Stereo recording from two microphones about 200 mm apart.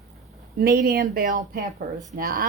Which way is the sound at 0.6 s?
50° right (ahead or behind).